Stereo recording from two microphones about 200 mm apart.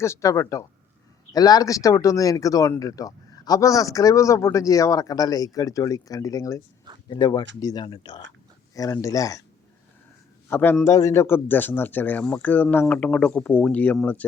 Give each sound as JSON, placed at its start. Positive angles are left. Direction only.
{"t": 0.0, "sound": "speech", "side_deg": 15}
{"t": 10.5, "sound": "speech", "side_deg": 10}